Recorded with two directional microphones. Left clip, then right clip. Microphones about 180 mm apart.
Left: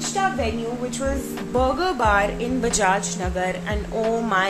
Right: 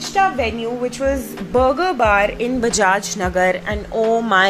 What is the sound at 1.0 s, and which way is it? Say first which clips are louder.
A woman's voice: right 6 dB; 20° right (ahead or behind).